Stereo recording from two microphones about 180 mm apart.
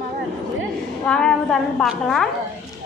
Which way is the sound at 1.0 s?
5° left (ahead or behind).